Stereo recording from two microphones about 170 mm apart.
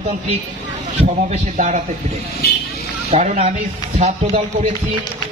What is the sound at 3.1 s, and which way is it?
Speech, 40° right (ahead or behind).